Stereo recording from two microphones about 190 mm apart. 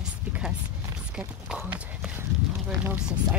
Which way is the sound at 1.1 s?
5° right (ahead or behind).